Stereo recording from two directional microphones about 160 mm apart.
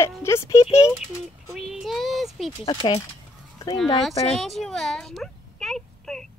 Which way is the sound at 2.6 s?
30° left (ahead or behind).